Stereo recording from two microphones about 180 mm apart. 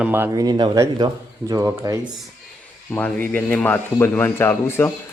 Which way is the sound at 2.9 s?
10° left (ahead or behind).